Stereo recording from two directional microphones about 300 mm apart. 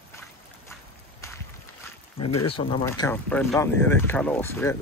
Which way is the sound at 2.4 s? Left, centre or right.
Centre.